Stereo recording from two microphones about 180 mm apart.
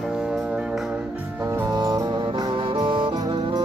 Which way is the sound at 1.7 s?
20° right (ahead or behind).